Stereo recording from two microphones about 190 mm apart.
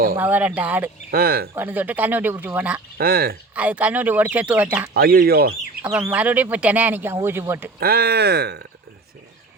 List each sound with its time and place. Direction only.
0.2 s speech: 10° right (ahead or behind)
1.1 s speech: 50° right (ahead or behind)
1.5 s speech: 10° right (ahead or behind)
3.0 s speech: 50° right (ahead or behind)
3.5 s speech: 5° right (ahead or behind)
4.9 s speech: 55° right (ahead or behind)
6.1 s speech: 10° right (ahead or behind)
7.8 s speech: 55° right (ahead or behind)